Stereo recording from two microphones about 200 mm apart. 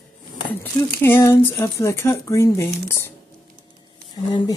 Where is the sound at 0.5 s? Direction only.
10° left (ahead or behind).